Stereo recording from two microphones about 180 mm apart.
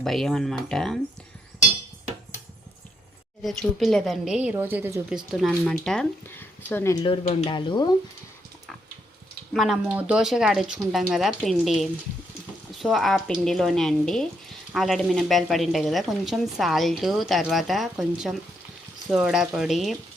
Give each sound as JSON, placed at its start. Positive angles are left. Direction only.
{"t": 0.0, "sound": "speech", "side_deg": 0}
{"t": 3.4, "sound": "speech", "side_deg": 0}
{"t": 7.0, "sound": "speech", "side_deg": 35}
{"t": 9.5, "sound": "speech", "side_deg": 0}